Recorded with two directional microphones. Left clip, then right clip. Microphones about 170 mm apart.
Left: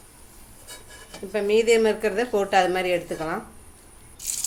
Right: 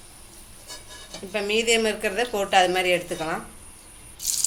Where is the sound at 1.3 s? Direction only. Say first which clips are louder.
Left 3 dB; 30° left (ahead or behind).